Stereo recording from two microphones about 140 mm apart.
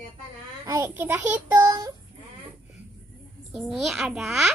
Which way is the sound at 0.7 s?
20° right (ahead or behind).